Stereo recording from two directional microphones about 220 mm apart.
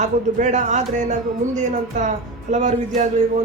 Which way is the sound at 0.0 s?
30° right (ahead or behind).